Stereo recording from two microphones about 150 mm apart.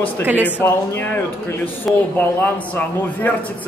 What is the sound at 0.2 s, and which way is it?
Speech, 10° right (ahead or behind).